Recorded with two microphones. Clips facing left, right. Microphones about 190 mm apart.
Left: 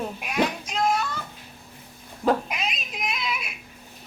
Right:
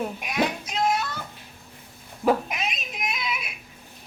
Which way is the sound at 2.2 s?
5° right (ahead or behind).